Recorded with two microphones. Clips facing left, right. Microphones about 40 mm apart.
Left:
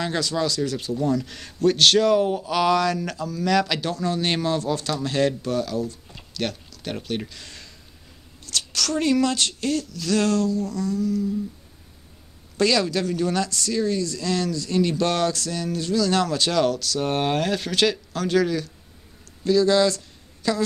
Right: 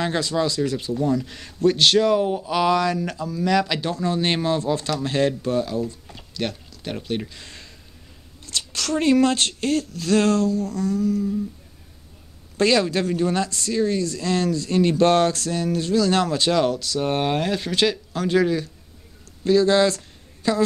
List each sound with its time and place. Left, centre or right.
0.0 s a man's voice: right
3.9 s speech: right
8.5 s a sound: centre
8.8 s speech: right
12.5 s speech: right